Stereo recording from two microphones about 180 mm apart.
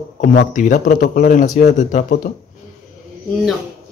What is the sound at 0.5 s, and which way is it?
Speech, 45° left (ahead or behind).